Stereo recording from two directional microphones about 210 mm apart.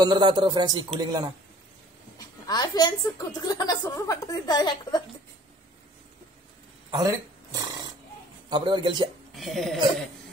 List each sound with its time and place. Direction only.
0.0 s speech: 20° right (ahead or behind)
2.1 s a woman's voice: 20° left (ahead or behind)
6.9 s a sound: 20° right (ahead or behind)
8.5 s speech: 20° right (ahead or behind)
9.3 s speech: centre (ahead or behind)